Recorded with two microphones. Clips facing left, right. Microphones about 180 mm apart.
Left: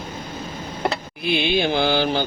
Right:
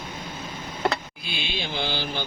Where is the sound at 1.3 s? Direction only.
60° left (ahead or behind); by 2.2 s 75° left (ahead or behind).